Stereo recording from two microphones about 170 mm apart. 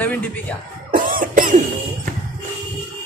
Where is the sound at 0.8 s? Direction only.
55° right (ahead or behind).